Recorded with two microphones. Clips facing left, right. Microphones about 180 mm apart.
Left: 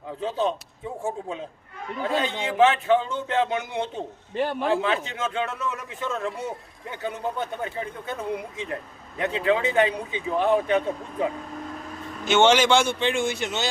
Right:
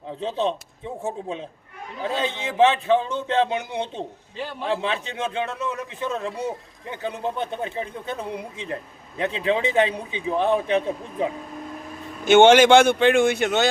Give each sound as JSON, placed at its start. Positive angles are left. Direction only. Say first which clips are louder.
{"t": 0.2, "sound": "speech", "louder": "right 1 dB", "side_deg": -25}
{"t": 2.0, "sound": "speech", "louder": "even", "side_deg": -20}
{"t": 12.2, "sound": "speech", "louder": "right 6 dB", "side_deg": -55}